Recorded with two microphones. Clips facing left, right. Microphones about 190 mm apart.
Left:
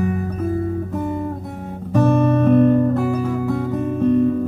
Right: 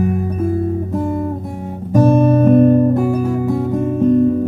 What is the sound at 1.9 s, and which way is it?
Guitar, 20° right (ahead or behind).